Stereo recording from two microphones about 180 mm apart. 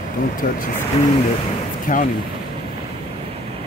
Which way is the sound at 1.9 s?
50° left (ahead or behind).